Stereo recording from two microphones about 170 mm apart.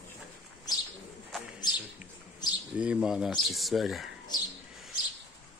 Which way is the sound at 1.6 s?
25° left (ahead or behind).